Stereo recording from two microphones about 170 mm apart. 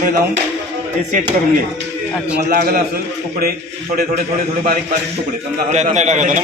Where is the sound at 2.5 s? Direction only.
65° right (ahead or behind).